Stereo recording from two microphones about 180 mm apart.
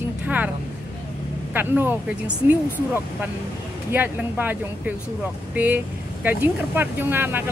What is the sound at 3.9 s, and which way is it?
Speech, 10° right (ahead or behind).